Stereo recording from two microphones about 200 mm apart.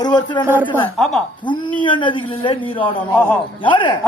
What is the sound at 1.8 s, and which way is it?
Speech, 25° left (ahead or behind).